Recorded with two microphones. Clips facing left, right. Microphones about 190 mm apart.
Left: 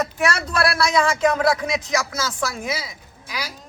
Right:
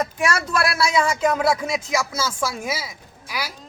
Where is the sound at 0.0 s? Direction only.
10° right (ahead or behind).